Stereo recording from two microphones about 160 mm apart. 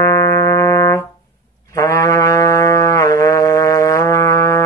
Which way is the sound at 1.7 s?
20° left (ahead or behind).